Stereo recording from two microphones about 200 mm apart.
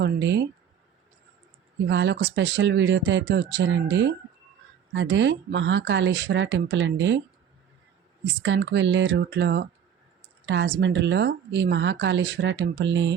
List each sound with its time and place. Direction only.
0.0 s a woman's voice: 55° right (ahead or behind)
1.9 s a woman's voice: 60° right (ahead or behind)
8.3 s a woman's voice: 65° right (ahead or behind)